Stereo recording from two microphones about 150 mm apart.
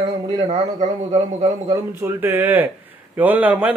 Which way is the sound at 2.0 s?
15° right (ahead or behind).